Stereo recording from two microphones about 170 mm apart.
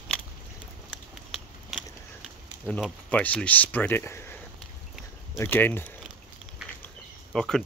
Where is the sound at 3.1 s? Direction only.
10° left (ahead or behind).